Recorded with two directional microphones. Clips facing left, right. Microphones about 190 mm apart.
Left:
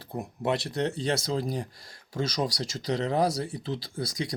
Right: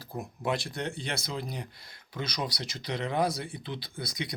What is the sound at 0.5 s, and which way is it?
Speech, 35° left (ahead or behind).